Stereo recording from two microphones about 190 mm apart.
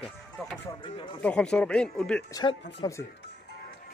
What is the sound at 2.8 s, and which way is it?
Speech, 15° left (ahead or behind).